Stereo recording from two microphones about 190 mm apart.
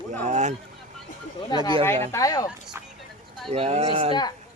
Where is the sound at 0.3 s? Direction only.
40° right (ahead or behind).